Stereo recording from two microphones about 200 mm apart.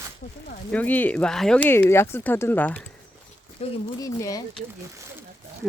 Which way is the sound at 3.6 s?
30° left (ahead or behind).